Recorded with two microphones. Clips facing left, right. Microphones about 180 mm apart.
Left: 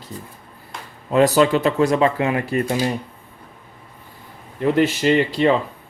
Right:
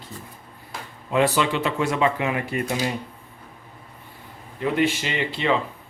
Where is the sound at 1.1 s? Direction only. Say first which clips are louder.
Left 6 dB; 40° left (ahead or behind).